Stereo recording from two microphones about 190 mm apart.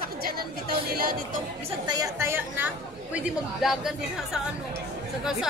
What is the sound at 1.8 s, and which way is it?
Speech, 20° right (ahead or behind).